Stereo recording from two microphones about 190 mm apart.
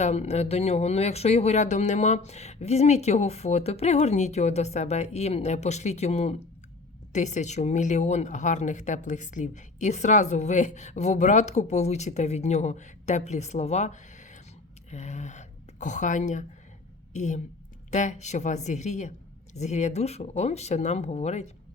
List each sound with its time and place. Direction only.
0.0 s a woman's voice: 35° left (ahead or behind)